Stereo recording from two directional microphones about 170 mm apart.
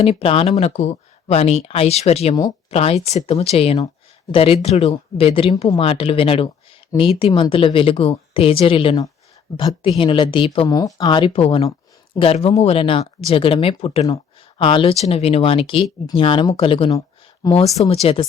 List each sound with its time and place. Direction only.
0.0 s speech: 35° left (ahead or behind)
17.4 s speech: 20° left (ahead or behind)
17.8 s speech: 35° left (ahead or behind)